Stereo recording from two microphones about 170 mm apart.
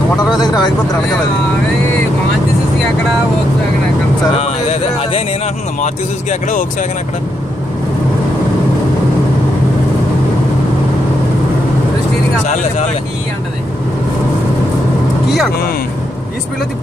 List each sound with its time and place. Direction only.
0.4 s speech: 25° left (ahead or behind)
4.3 s speech: 40° left (ahead or behind)